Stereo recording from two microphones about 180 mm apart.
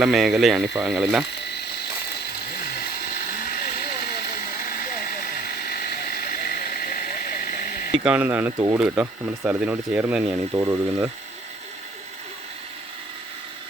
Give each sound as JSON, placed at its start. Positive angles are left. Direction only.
{"t": 0.0, "sound": "speech", "side_deg": 0}
{"t": 3.2, "sound": "vehicle", "side_deg": 50}
{"t": 8.0, "sound": "speech", "side_deg": -10}
{"t": 8.8, "sound": "speech", "side_deg": -5}